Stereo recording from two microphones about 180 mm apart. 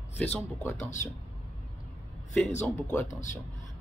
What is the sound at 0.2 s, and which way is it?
Speech, 10° left (ahead or behind).